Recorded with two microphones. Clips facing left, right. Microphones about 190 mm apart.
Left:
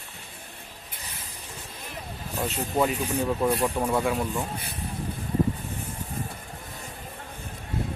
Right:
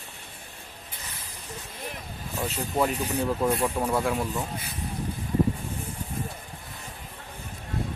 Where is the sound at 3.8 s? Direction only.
5° right (ahead or behind).